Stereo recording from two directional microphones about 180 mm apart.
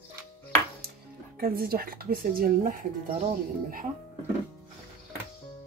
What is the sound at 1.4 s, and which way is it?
Speech, 55° right (ahead or behind).